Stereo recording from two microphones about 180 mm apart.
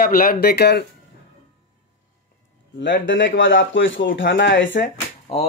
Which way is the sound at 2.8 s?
90° left.